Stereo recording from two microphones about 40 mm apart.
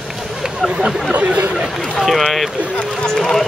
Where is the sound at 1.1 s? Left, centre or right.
Right.